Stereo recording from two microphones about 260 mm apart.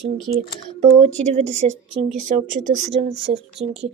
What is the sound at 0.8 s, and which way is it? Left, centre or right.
Speech, right.